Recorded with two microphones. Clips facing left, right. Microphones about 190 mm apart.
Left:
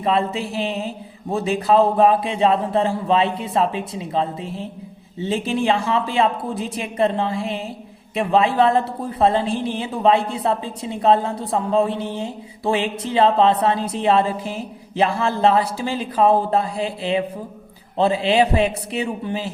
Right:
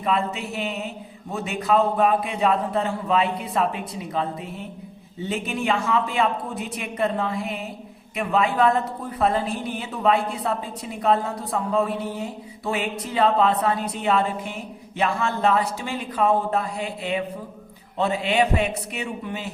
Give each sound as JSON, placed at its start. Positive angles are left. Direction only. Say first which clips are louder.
{"t": 0.0, "sound": "a man's voice", "louder": "left 4 dB", "side_deg": 30}